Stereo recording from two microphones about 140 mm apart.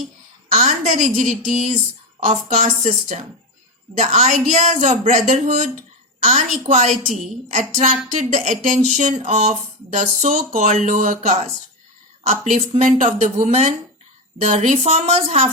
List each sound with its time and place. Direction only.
0.5 s a woman's voice: 50° right (ahead or behind)
12.8 s speech: 60° right (ahead or behind)